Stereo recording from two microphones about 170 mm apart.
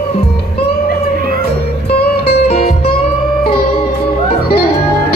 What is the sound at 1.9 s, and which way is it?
Music, 70° left (ahead or behind).